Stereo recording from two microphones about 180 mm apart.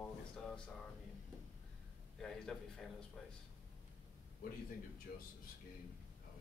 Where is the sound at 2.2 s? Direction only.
5° left (ahead or behind).